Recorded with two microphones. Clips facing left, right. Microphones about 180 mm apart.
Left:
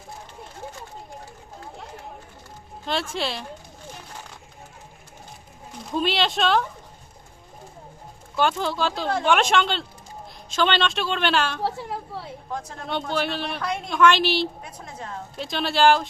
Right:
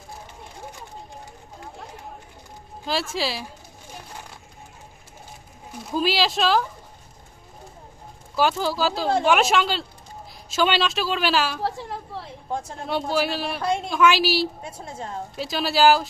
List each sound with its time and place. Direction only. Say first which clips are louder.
2.8 s speech: right 1 dB; 5° right (ahead or behind)
5.9 s speech: right 1 dB; 5° right (ahead or behind)
8.4 s speech: right 1 dB; 5° right (ahead or behind)
13.6 s speech: right 4 dB; 25° right (ahead or behind)
13.9 s speech: left 2 dB; 5° right (ahead or behind)
14.6 s a woman's voice: right 3 dB; 25° right (ahead or behind)
15.4 s speech: right 1 dB; 5° right (ahead or behind)